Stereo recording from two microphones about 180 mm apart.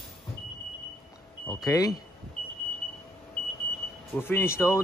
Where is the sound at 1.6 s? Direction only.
20° left (ahead or behind).